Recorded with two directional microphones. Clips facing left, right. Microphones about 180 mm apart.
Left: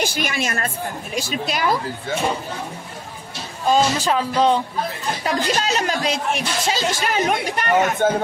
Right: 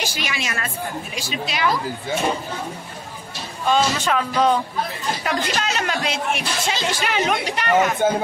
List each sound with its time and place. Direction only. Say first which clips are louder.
0.0 s speech: left 4 dB; 50° left (ahead or behind)
3.6 s speech: left 2 dB; 35° left (ahead or behind)
8.0 s speech: left 1 dB; 10° right (ahead or behind)